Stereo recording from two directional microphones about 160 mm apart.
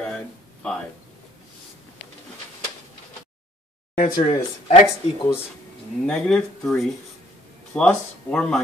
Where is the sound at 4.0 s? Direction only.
40° left (ahead or behind).